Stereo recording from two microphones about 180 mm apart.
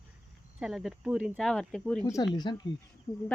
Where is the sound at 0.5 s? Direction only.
5° right (ahead or behind).